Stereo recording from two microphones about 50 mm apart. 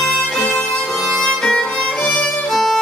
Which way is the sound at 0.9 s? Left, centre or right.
Centre.